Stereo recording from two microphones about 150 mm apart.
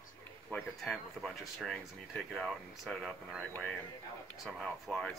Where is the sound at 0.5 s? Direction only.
Centre (ahead or behind).